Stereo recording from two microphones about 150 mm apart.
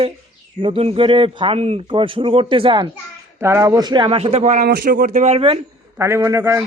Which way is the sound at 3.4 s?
20° right (ahead or behind).